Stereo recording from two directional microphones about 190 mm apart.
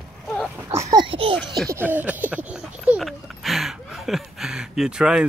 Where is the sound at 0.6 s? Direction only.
20° right (ahead or behind).